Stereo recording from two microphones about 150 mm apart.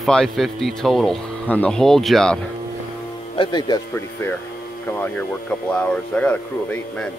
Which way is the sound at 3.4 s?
30° left (ahead or behind).